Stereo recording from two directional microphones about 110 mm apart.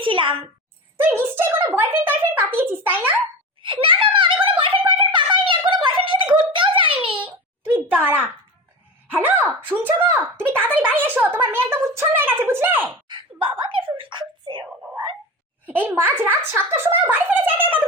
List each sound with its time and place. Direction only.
0.0 s a sound: 50° right (ahead or behind)
0.9 s a woman's voice: 20° right (ahead or behind)
3.6 s a child's voice: 50° right (ahead or behind)
4.9 s a sound: 50° right (ahead or behind)
7.9 s a woman's voice: 15° right (ahead or behind)
13.1 s speech: 50° right (ahead or behind)
15.6 s speech: 15° right (ahead or behind)